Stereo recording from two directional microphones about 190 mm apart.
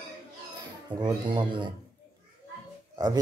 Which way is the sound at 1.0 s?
25° right (ahead or behind).